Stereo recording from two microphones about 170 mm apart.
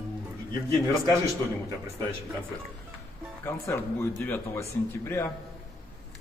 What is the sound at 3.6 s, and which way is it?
Speech, 15° left (ahead or behind).